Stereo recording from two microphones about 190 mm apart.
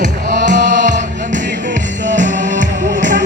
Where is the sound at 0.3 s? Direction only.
40° right (ahead or behind).